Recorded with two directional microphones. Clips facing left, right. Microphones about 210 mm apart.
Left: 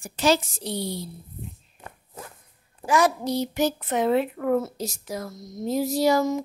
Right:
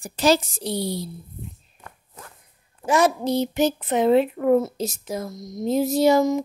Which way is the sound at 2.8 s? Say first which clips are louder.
Right 2 dB; 25° right (ahead or behind).